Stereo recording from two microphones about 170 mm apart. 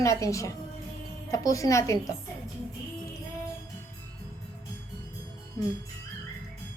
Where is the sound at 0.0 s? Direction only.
20° left (ahead or behind).